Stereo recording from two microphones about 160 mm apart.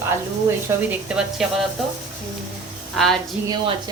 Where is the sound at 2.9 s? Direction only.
Centre (ahead or behind).